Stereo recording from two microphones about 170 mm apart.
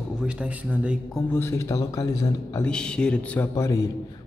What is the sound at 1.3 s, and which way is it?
A man's voice, 15° left (ahead or behind).